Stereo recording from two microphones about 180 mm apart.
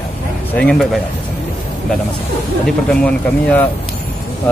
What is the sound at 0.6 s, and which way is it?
Speech, 5° left (ahead or behind).